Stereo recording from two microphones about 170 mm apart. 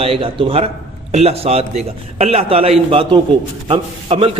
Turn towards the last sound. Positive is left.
turn(degrees=-35)  # may be behind; listen again after turning